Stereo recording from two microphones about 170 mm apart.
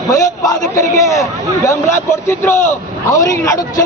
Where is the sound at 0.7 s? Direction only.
20° left (ahead or behind).